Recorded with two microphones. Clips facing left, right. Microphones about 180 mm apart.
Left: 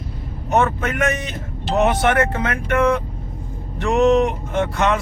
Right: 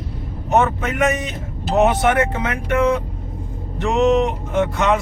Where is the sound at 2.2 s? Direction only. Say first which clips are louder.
Even; 15° right (ahead or behind).